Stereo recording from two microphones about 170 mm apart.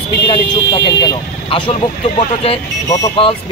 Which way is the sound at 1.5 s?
30° left (ahead or behind).